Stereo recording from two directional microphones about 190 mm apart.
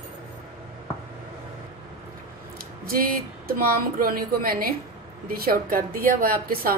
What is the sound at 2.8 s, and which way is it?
A woman's voice, 50° right (ahead or behind).